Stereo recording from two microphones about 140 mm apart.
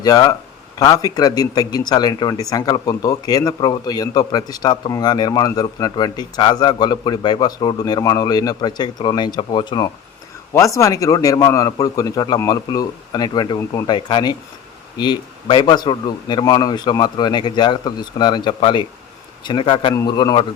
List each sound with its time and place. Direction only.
0.0 s a man's voice: 25° left (ahead or behind)